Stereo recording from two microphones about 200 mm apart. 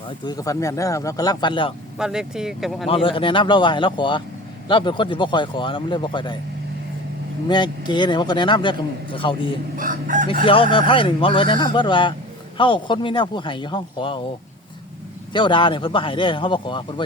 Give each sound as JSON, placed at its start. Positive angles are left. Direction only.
{"t": 0.3, "sound": "speech", "side_deg": 15}
{"t": 2.0, "sound": "speech", "side_deg": -5}
{"t": 2.8, "sound": "a man's voice", "side_deg": 25}
{"t": 7.4, "sound": "a man's voice", "side_deg": 20}
{"t": 9.7, "sound": "speech", "side_deg": -45}
{"t": 10.4, "sound": "a man's voice", "side_deg": 25}
{"t": 15.3, "sound": "a man's voice", "side_deg": 25}